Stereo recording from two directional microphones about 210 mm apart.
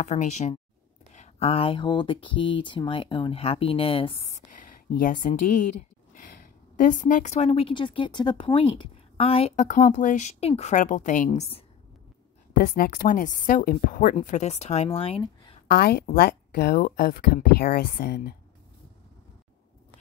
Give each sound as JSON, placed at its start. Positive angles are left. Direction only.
{"t": 0.0, "sound": "a woman's voice", "side_deg": 35}
{"t": 11.2, "sound": "speech", "side_deg": 25}
{"t": 12.6, "sound": "a woman's voice", "side_deg": 40}
{"t": 15.7, "sound": "speech", "side_deg": 45}